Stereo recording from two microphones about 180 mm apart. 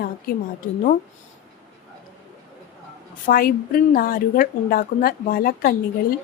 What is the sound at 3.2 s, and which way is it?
A woman's voice, 55° left (ahead or behind).